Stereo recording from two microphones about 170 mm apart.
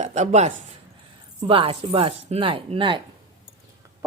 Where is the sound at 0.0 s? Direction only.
45° right (ahead or behind).